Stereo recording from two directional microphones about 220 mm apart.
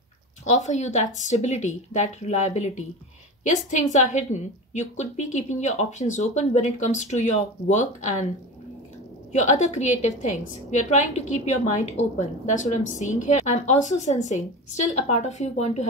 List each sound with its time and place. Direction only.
0.5 s a woman's voice: 30° left (ahead or behind)
9.3 s a woman's voice: 35° left (ahead or behind)